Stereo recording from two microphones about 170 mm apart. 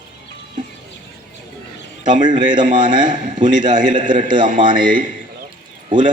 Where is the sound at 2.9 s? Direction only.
25° right (ahead or behind).